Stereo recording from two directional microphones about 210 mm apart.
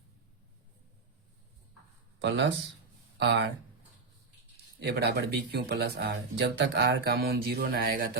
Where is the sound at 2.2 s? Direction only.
60° right (ahead or behind).